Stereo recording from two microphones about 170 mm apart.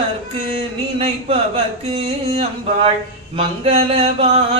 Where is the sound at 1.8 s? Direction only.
35° right (ahead or behind).